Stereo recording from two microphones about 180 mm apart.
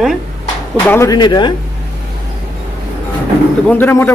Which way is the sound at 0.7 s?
10° left (ahead or behind).